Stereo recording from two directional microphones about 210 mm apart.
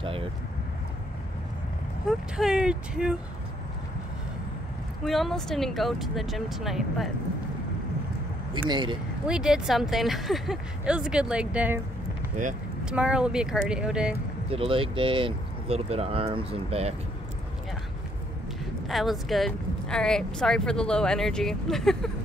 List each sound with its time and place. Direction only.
2.0 s speech: 5° right (ahead or behind)
5.0 s speech: centre (ahead or behind)
8.5 s speech: 20° right (ahead or behind)
9.3 s speech: centre (ahead or behind)
12.8 s speech: 5° right (ahead or behind)
14.5 s speech: 25° right (ahead or behind)
18.9 s speech: centre (ahead or behind)